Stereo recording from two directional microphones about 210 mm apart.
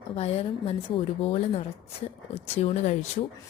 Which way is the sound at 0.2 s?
30° left (ahead or behind).